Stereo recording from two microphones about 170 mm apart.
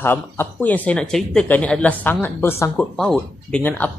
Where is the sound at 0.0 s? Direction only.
10° left (ahead or behind).